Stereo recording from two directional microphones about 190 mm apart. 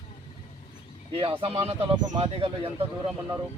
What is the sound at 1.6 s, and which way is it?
Speech, 30° right (ahead or behind).